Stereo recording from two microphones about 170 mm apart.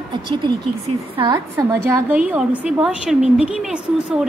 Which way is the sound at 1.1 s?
25° right (ahead or behind).